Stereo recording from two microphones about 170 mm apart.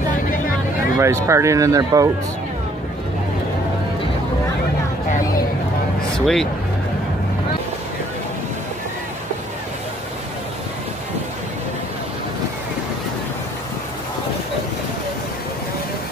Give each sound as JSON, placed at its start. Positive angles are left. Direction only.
{"t": 0.9, "sound": "speech", "side_deg": -15}
{"t": 6.1, "sound": "speech", "side_deg": 0}